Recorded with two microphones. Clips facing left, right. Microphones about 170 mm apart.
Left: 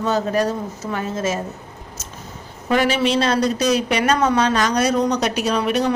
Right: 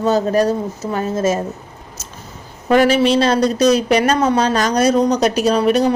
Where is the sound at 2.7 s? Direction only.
40° right (ahead or behind).